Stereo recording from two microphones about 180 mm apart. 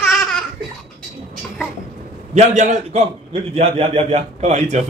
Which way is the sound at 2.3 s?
40° right (ahead or behind).